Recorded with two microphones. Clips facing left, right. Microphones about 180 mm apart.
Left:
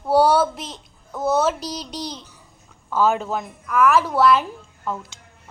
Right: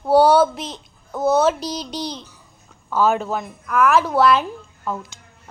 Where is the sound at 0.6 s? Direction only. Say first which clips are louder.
Right 3 dB; 30° right (ahead or behind).